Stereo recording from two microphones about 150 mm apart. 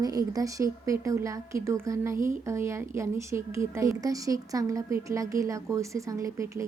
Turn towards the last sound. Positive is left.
turn(degrees=-20)  # may be behind; listen again after turning